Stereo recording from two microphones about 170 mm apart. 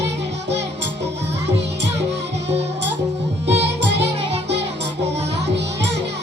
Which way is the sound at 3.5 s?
90° right.